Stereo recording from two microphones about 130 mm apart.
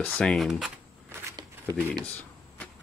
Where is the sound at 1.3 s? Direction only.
30° right (ahead or behind).